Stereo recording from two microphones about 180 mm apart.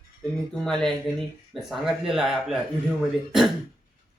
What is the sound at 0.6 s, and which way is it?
Speech, 5° left (ahead or behind).